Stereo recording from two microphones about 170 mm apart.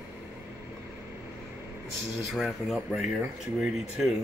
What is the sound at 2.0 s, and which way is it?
Speech, centre (ahead or behind).